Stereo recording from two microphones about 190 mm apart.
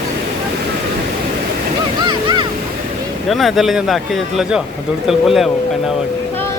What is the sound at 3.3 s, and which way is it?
Speech, centre (ahead or behind).